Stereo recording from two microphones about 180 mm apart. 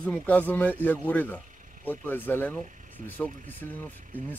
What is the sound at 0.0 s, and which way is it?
Speech, 10° left (ahead or behind).